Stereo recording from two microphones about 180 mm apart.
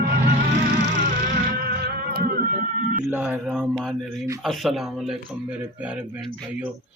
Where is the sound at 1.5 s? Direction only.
55° right (ahead or behind).